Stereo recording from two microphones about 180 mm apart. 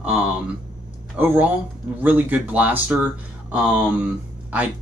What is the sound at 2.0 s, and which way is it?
Speech, 10° right (ahead or behind).